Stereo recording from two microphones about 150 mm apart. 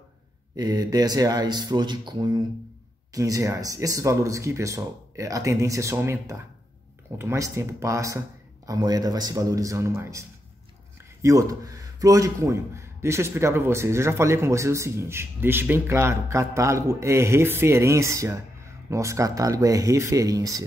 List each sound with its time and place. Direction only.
0.6 s a man's voice: 25° right (ahead or behind)
11.2 s a man's voice: 20° right (ahead or behind)